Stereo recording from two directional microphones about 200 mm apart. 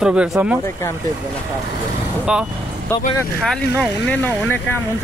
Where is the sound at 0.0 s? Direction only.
5° right (ahead or behind).